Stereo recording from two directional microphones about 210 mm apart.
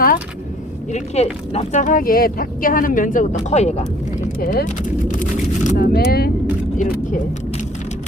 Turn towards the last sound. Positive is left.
turn(degrees=35)  # may be behind; listen again after turning